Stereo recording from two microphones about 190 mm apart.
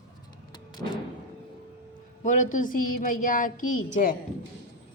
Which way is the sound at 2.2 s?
40° left (ahead or behind).